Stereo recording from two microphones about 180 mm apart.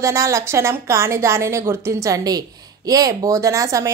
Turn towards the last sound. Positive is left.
turn(degrees=-15)  # may be behind; listen again after turning